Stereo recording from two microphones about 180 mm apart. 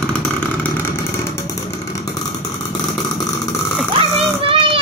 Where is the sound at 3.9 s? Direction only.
30° right (ahead or behind).